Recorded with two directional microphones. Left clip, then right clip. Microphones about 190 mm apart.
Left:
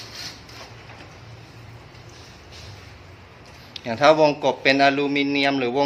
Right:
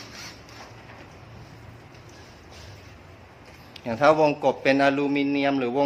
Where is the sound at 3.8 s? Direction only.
5° right (ahead or behind).